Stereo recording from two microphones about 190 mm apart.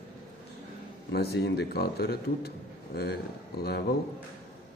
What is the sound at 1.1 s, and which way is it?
A man's voice, 60° left (ahead or behind).